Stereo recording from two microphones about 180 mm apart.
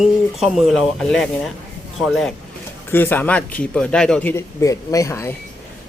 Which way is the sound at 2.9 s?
10° left (ahead or behind).